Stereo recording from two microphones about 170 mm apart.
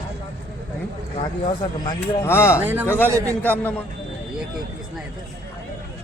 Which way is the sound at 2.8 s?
15° left (ahead or behind).